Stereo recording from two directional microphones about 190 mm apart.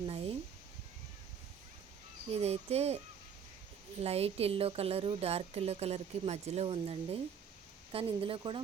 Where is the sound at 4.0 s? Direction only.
30° right (ahead or behind).